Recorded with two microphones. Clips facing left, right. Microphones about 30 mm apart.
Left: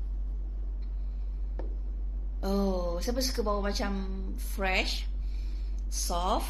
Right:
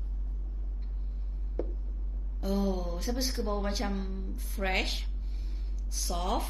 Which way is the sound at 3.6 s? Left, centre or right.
Centre.